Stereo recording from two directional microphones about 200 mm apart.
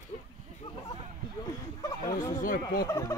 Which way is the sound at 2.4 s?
45° left (ahead or behind).